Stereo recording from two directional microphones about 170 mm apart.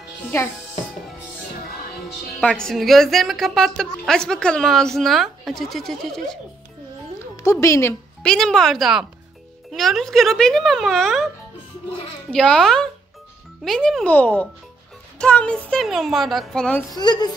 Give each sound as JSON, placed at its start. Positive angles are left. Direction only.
{"t": 2.4, "sound": "a woman's voice", "side_deg": 5}
{"t": 7.6, "sound": "a child's voice", "side_deg": 15}
{"t": 8.2, "sound": "a woman's voice", "side_deg": 5}
{"t": 12.3, "sound": "a woman's voice", "side_deg": 5}
{"t": 16.9, "sound": "a woman's voice", "side_deg": 25}